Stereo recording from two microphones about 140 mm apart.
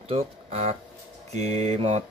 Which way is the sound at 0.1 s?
50° right (ahead or behind).